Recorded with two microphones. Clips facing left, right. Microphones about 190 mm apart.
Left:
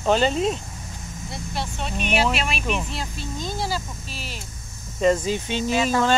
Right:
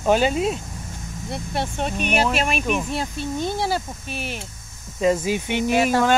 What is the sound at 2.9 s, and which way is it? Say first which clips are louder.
Speech: right 6 dB; 60° right (ahead or behind).